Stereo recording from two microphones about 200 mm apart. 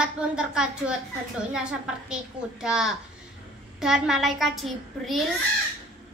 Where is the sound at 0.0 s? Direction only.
5° right (ahead or behind).